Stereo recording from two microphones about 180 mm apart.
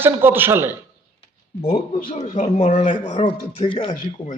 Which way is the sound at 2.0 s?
40° left (ahead or behind).